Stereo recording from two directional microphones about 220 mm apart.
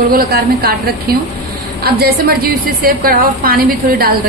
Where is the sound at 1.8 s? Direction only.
45° right (ahead or behind).